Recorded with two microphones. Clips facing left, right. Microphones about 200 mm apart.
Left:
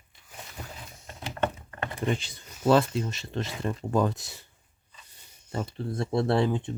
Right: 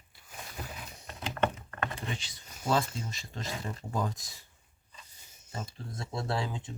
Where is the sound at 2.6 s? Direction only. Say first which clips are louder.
Left 8 dB; 70° left (ahead or behind).